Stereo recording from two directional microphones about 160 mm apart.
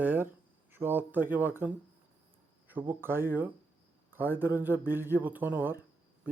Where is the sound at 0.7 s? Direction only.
10° right (ahead or behind).